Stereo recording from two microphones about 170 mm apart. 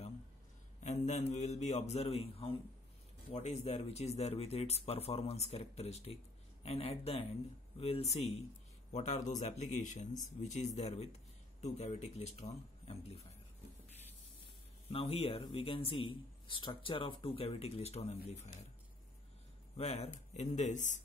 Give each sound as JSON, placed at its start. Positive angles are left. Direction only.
{"t": 0.8, "sound": "a man's voice", "side_deg": 40}
{"t": 14.9, "sound": "a man's voice", "side_deg": 35}
{"t": 19.8, "sound": "speech", "side_deg": 40}